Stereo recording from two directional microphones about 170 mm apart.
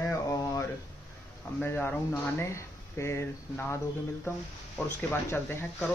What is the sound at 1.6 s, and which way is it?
Speech, 10° left (ahead or behind).